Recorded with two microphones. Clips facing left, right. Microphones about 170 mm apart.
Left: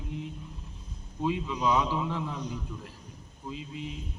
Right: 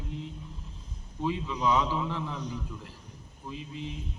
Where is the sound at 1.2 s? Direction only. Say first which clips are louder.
Left 1 dB; 15° left (ahead or behind).